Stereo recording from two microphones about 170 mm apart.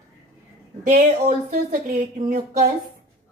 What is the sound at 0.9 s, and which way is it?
Speech, 50° right (ahead or behind).